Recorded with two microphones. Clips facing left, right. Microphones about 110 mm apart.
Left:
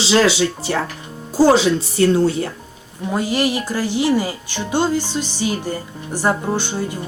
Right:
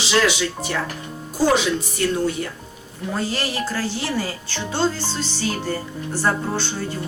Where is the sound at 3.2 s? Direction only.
15° left (ahead or behind).